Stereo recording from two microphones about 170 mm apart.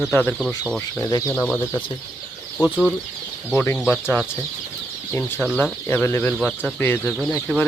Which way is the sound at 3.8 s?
5° right (ahead or behind).